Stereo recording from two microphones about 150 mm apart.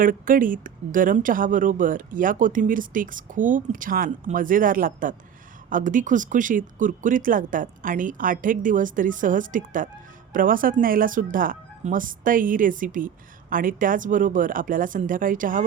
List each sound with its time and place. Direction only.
0.0 s speech: 65° right (ahead or behind)